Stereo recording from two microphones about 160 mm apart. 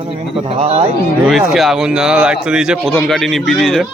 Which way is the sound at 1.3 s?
Centre (ahead or behind).